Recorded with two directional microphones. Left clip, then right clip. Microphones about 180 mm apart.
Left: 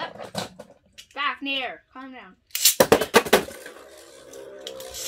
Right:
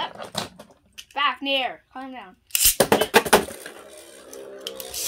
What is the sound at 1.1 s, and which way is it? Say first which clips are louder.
A woman's voice: right 4 dB; 55° right (ahead or behind).